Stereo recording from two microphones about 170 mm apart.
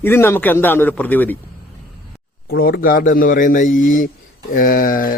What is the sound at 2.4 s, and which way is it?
A man's voice, 65° left (ahead or behind).